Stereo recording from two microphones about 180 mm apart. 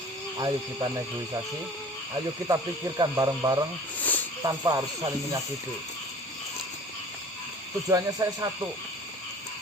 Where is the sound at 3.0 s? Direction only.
20° right (ahead or behind).